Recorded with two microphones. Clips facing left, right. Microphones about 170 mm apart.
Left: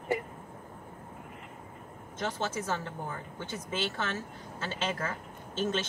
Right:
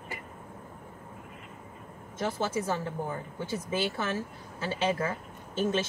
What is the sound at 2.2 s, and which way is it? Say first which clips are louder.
A woman's voice: right 3 dB; 10° right (ahead or behind).